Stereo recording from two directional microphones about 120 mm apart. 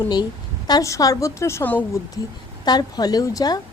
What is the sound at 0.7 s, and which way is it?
Speech, 25° left (ahead or behind).